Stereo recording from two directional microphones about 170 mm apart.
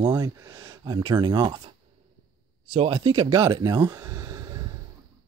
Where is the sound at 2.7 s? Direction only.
25° right (ahead or behind).